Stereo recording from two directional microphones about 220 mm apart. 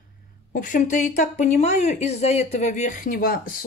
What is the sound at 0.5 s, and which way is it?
Speech, 35° left (ahead or behind).